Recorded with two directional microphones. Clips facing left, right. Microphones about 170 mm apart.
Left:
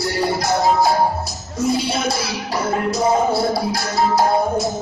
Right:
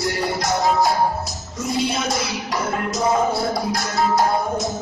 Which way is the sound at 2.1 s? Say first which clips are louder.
Left 1 dB; 30° left (ahead or behind).